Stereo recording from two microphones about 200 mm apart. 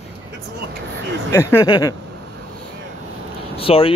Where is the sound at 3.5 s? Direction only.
30° left (ahead or behind).